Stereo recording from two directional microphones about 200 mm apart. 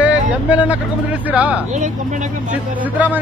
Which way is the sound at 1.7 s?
40° right (ahead or behind).